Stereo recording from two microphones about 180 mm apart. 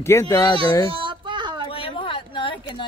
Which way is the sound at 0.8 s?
30° right (ahead or behind).